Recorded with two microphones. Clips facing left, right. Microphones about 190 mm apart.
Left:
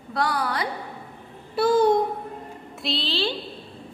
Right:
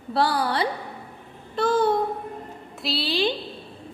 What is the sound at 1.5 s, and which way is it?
Speech, 10° left (ahead or behind).